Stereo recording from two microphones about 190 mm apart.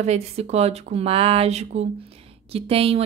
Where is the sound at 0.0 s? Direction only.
35° right (ahead or behind).